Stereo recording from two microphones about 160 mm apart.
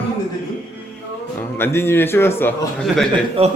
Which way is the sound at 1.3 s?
15° left (ahead or behind).